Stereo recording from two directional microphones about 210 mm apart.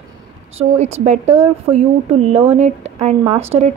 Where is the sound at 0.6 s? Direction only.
30° right (ahead or behind).